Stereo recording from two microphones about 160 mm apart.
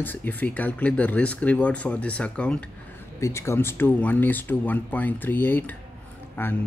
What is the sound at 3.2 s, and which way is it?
Speech, 20° left (ahead or behind).